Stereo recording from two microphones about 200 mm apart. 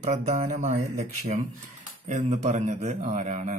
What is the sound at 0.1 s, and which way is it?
A man's voice, 40° right (ahead or behind).